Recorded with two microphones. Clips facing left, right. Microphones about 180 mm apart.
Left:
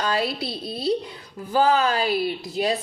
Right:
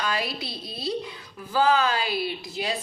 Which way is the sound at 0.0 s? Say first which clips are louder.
Left 5 dB; 35° left (ahead or behind).